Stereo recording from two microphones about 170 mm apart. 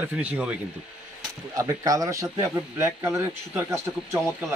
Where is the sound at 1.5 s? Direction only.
20° right (ahead or behind).